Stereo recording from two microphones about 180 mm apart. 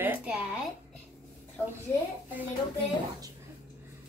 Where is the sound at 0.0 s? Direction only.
10° right (ahead or behind).